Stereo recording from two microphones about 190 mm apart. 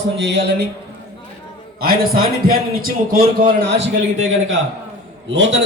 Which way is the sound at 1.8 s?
50° right (ahead or behind).